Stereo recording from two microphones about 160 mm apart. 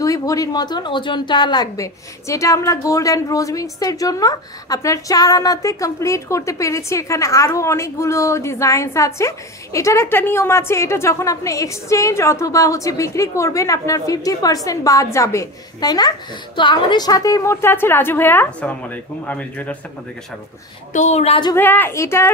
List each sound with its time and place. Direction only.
0.0 s a woman's voice: 20° left (ahead or behind)
20.9 s a woman's voice: 45° left (ahead or behind)
21.5 s a woman's voice: 10° left (ahead or behind)